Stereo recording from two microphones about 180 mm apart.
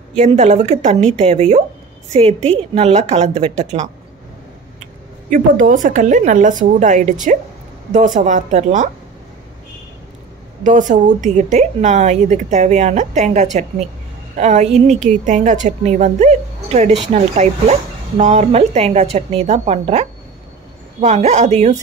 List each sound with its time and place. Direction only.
0.1 s a woman's voice: 40° right (ahead or behind)
5.3 s a woman's voice: 45° right (ahead or behind)
8.2 s a woman's voice: 45° right (ahead or behind)
10.6 s a woman's voice: 45° right (ahead or behind)